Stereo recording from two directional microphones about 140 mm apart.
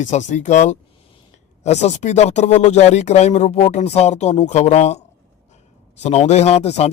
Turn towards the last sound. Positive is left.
turn(degrees=50)  # may be behind; listen again after turning